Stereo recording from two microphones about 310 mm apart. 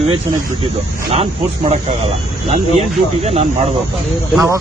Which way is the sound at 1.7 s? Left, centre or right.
Centre.